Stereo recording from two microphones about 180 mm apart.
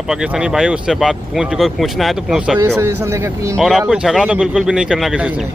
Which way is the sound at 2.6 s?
15° right (ahead or behind).